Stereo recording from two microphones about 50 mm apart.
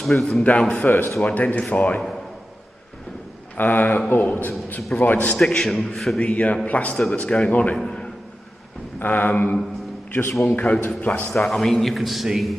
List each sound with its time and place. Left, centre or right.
0.0 s speech: centre
0.5 s a man's voice: left
0.8 s a man's voice: left
1.2 s a man's voice: left
3.5 s a man's voice: left
5.3 s a man's voice: centre
6.1 s a man's voice: left
7.4 s a man's voice: left
7.7 s a man's voice: centre
9.0 s a man's voice: left
11.3 s a man's voice: centre